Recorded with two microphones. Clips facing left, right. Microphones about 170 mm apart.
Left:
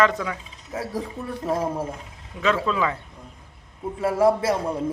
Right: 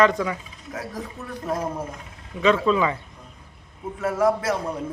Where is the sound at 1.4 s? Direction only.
30° left (ahead or behind).